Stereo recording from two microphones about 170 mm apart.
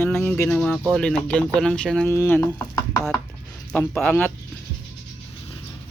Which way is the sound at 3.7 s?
5° left (ahead or behind).